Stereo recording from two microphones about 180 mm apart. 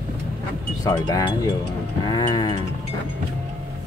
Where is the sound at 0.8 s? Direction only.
20° left (ahead or behind).